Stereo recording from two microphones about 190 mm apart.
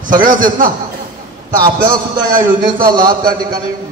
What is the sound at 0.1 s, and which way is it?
Speech, 45° right (ahead or behind).